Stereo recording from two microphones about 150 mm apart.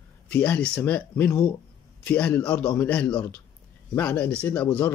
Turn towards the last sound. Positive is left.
turn(degrees=10)  # may be behind; listen again after turning